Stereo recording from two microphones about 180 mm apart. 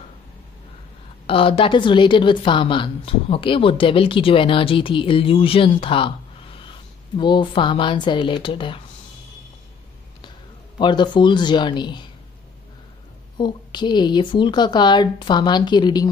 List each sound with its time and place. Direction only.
1.2 s a woman's voice: 30° left (ahead or behind)
10.8 s a woman's voice: 25° left (ahead or behind)
13.4 s a woman's voice: 25° left (ahead or behind)